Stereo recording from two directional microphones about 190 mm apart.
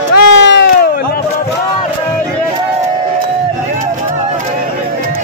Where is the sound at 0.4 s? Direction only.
65° left (ahead or behind).